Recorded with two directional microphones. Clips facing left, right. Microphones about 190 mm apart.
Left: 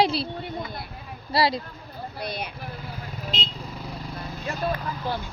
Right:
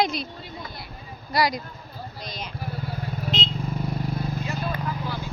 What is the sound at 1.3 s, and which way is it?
Speech, 30° left (ahead or behind).